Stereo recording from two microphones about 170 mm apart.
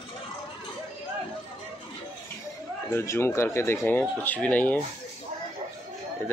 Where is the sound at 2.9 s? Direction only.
15° left (ahead or behind).